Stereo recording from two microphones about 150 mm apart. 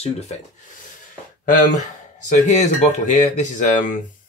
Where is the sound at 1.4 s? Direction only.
60° left (ahead or behind).